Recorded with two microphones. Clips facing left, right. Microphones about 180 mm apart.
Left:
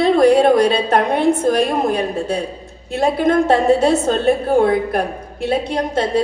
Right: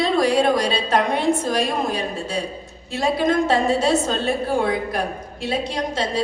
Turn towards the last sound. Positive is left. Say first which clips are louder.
# left 6 dB
turn(degrees=55)  # may be behind; listen again after turning